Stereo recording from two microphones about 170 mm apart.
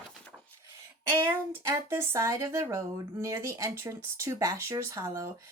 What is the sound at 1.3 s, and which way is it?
Speech, 15° right (ahead or behind).